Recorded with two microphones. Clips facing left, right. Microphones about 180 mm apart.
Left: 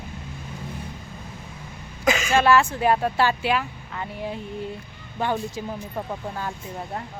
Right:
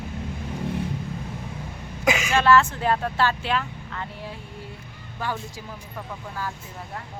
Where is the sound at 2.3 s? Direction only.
10° left (ahead or behind).